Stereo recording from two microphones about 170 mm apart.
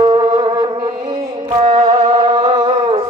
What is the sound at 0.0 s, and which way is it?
Music, 25° right (ahead or behind).